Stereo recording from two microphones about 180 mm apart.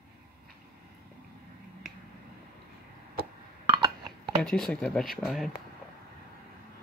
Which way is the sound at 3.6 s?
25° right (ahead or behind).